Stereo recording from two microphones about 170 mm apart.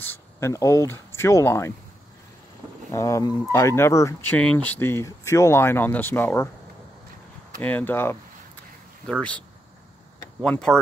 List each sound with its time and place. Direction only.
0.0 s speech: 15° left (ahead or behind)
2.9 s speech: 15° left (ahead or behind)
7.6 s speech: 10° left (ahead or behind)
10.4 s speech: 5° left (ahead or behind)